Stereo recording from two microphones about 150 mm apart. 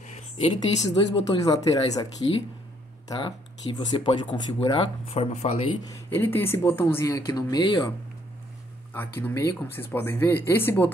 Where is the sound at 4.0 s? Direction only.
30° left (ahead or behind).